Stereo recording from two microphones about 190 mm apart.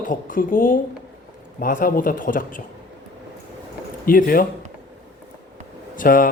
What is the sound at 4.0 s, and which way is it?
Speech, 50° left (ahead or behind).